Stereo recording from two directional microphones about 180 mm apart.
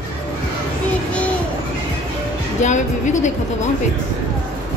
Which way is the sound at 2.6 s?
40° left (ahead or behind).